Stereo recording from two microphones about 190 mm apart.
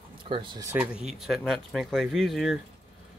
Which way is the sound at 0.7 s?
5° right (ahead or behind).